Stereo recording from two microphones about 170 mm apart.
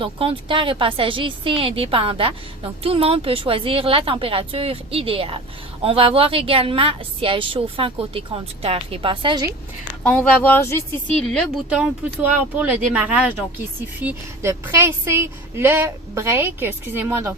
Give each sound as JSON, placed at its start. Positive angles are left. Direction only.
{"t": 0.0, "sound": "a woman's voice", "side_deg": -30}
{"t": 10.0, "sound": "speech", "side_deg": 10}
{"t": 11.2, "sound": "a woman's voice", "side_deg": 0}